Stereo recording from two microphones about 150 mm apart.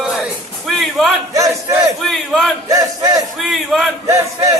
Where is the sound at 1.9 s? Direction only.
Centre (ahead or behind).